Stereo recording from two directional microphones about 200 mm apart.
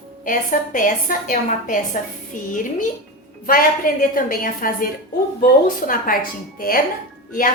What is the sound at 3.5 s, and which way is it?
A woman's voice, 45° left (ahead or behind).